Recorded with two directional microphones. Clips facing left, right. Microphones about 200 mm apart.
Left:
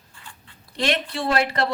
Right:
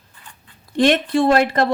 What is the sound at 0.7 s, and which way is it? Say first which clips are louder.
Speech: right 9 dB; 50° right (ahead or behind).